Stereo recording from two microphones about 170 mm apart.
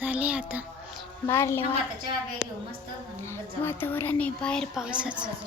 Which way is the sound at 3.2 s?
15° left (ahead or behind).